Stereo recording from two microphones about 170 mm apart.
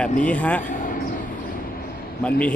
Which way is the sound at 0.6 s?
50° left (ahead or behind).